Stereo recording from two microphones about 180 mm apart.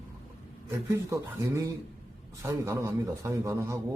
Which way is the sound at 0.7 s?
15° right (ahead or behind).